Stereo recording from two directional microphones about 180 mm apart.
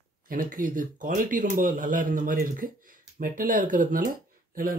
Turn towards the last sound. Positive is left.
turn(degrees=-55)  # may be behind; listen again after turning